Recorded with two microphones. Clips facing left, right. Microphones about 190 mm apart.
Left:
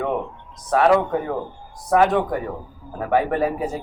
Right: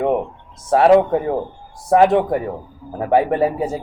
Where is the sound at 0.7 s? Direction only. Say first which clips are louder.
Right 5 dB; 25° right (ahead or behind).